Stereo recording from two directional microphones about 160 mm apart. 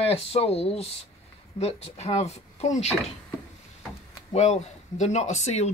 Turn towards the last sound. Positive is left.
turn(degrees=45)  # may be behind; listen again after turning